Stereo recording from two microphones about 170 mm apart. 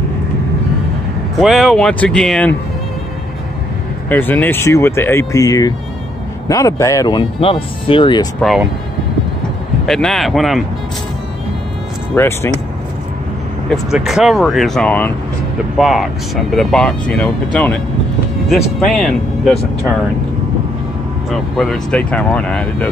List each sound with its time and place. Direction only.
1.4 s speech: centre (ahead or behind)
4.1 s speech: 10° left (ahead or behind); by 8.3 s 30° left (ahead or behind)
8.4 s speech: centre (ahead or behind)
9.8 s speech: 5° left (ahead or behind)
12.1 s speech: 15° left (ahead or behind)
13.7 s speech: 5° right (ahead or behind)
15.8 s speech: centre (ahead or behind)
18.9 s speech: 5° left (ahead or behind)
21.3 s speech: centre (ahead or behind)